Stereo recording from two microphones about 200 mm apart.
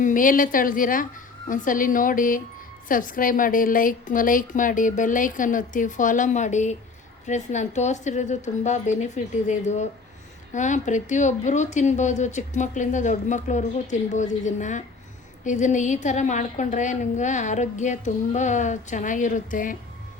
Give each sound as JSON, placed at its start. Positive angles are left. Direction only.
{"t": 0.0, "sound": "a woman's voice", "side_deg": 40}